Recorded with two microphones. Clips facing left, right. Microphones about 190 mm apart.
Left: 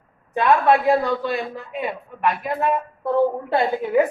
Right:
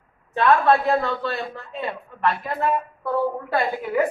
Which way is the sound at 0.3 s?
15° left (ahead or behind).